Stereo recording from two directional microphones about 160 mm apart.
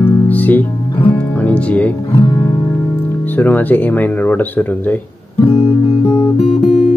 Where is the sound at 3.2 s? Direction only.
10° left (ahead or behind).